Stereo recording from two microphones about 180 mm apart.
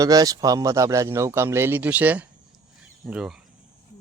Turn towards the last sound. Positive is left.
turn(degrees=-5)  # may be behind; listen again after turning